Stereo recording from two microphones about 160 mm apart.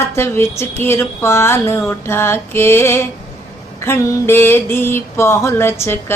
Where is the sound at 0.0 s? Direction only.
15° left (ahead or behind).